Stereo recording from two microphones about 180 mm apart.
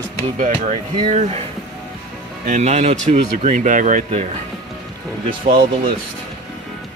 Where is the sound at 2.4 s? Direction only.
40° right (ahead or behind).